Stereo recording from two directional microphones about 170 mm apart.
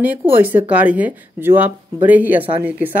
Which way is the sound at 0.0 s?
10° right (ahead or behind).